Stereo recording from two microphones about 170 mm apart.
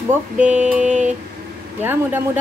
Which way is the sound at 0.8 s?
45° right (ahead or behind).